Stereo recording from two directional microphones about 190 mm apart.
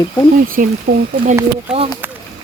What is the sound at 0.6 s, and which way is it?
Speech, 40° right (ahead or behind).